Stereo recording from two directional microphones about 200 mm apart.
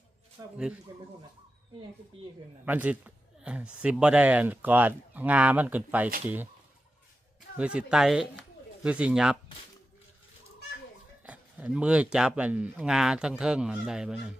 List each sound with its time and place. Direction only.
0.4 s speech: 15° right (ahead or behind)
2.6 s a man's voice: 10° right (ahead or behind)
7.5 s speech: 5° right (ahead or behind)
11.2 s speech: 5° right (ahead or behind)